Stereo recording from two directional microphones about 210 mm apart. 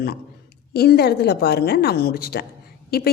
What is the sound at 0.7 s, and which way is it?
A woman's voice, 50° left (ahead or behind).